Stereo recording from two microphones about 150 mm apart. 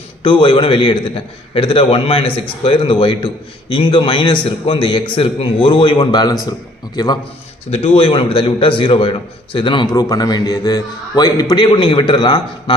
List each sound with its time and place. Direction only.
0.2 s a man's voice: 35° left (ahead or behind)
7.7 s a man's voice: 40° left (ahead or behind)